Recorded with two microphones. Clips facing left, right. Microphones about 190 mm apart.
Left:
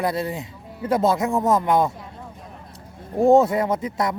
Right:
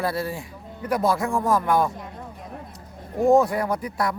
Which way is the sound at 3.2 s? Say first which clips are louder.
Left 3 dB; 25° left (ahead or behind).